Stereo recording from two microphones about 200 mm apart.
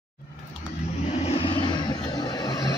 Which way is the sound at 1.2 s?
30° left (ahead or behind).